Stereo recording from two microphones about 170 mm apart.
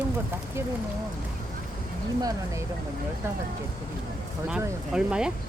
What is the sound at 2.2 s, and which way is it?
Speech, 20° right (ahead or behind).